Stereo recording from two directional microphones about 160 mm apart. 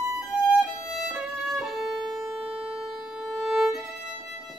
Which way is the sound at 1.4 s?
Centre (ahead or behind).